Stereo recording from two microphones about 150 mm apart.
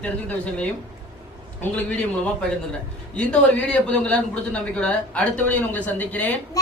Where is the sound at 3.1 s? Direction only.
5° left (ahead or behind).